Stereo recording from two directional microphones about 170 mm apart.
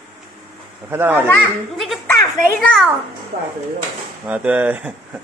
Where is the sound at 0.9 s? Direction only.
10° right (ahead or behind).